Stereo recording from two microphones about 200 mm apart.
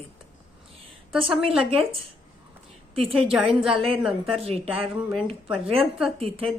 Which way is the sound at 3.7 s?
30° right (ahead or behind).